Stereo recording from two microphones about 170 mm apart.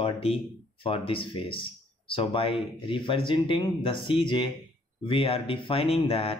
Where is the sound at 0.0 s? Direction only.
35° left (ahead or behind).